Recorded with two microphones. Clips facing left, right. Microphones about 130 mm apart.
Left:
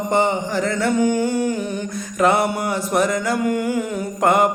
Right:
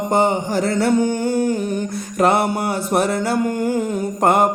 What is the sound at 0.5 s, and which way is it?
Mantra, 35° right (ahead or behind).